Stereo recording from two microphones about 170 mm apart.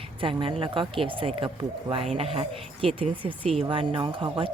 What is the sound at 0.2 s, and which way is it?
Speech, 30° right (ahead or behind).